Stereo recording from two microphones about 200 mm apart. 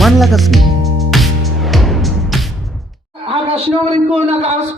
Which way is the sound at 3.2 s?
30° right (ahead or behind).